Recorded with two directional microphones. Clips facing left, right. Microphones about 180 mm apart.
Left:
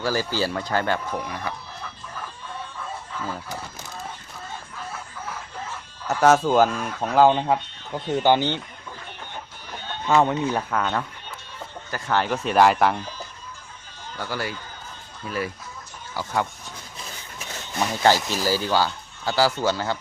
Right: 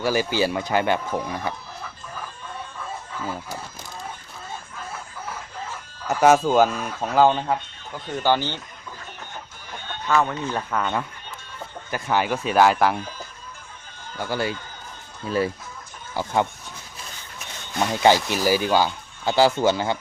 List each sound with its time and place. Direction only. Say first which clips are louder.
0.0 s speech: right 3 dB; 20° right (ahead or behind)
6.1 s speech: right 1 dB; 10° right (ahead or behind)
7.3 s speech: left 2 dB; 25° left (ahead or behind)
10.1 s speech: left 3 dB; 20° left (ahead or behind)
10.7 s speech: even; 5° right (ahead or behind)
14.2 s speech: right 4 dB; 20° right (ahead or behind)
18.0 s speech: right 2 dB; 15° right (ahead or behind)